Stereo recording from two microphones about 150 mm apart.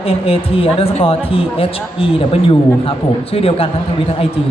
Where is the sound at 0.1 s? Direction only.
40° left (ahead or behind).